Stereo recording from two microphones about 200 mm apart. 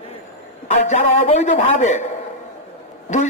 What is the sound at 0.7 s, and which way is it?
A man's voice, 35° left (ahead or behind).